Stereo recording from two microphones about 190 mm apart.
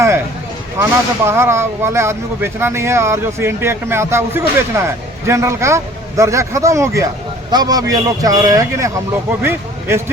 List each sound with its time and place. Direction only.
0.8 s a man's voice: 15° right (ahead or behind)